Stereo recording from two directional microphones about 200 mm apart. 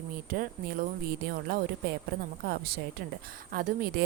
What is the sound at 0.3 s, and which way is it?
A woman's voice, 45° right (ahead or behind).